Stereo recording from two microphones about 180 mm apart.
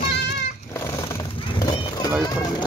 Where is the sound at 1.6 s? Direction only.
20° left (ahead or behind).